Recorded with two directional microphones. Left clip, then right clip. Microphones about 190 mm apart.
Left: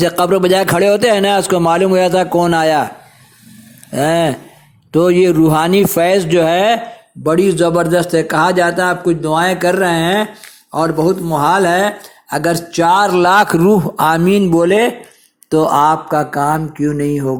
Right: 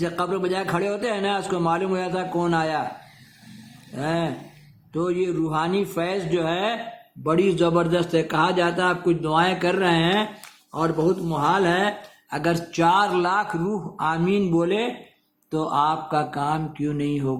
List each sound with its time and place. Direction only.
0.0 s a man's voice: 45° left (ahead or behind)
3.9 s a man's voice: 40° left (ahead or behind)
7.3 s a man's voice: 30° left (ahead or behind)